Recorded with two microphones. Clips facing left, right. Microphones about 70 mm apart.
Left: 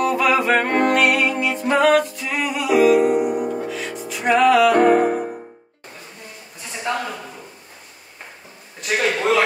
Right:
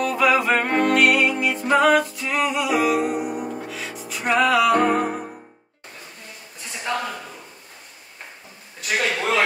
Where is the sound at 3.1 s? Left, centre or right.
Left.